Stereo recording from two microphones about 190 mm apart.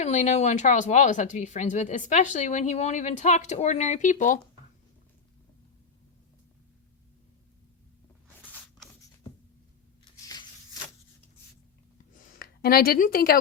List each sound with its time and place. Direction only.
0.0 s speech: 40° left (ahead or behind)
10.0 s a sound: 20° left (ahead or behind)
12.3 s speech: 55° left (ahead or behind)